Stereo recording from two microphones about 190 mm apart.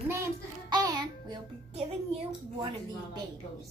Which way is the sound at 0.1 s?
15° right (ahead or behind).